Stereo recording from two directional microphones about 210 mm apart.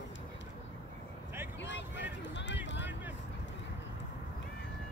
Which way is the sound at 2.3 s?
60° left (ahead or behind).